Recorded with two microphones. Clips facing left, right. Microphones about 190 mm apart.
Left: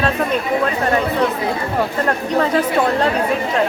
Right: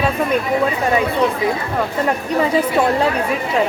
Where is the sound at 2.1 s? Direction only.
10° right (ahead or behind).